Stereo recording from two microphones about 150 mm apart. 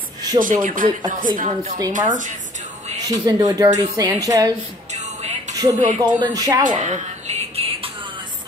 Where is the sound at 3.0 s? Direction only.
25° right (ahead or behind).